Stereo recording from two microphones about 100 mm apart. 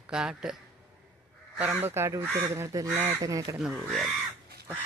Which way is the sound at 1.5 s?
15° right (ahead or behind).